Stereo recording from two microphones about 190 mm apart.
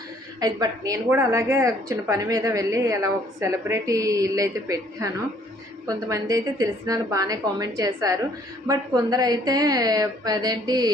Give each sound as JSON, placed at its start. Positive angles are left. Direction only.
{"t": 0.3, "sound": "a woman's voice", "side_deg": -20}